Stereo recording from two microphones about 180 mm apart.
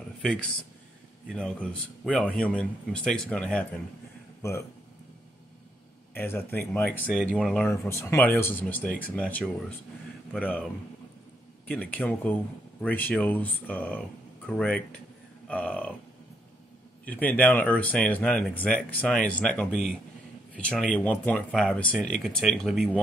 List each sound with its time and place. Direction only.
0.2 s speech: 5° left (ahead or behind)
6.1 s speech: 10° left (ahead or behind)
15.4 s a sound: 5° left (ahead or behind)
17.0 s speech: 10° left (ahead or behind)